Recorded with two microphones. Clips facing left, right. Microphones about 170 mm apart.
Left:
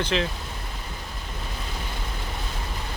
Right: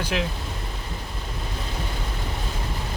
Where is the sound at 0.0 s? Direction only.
10° right (ahead or behind).